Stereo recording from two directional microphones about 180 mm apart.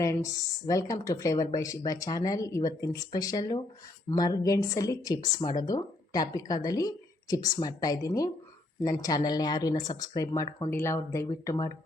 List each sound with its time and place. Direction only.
0.0 s speech: 15° left (ahead or behind)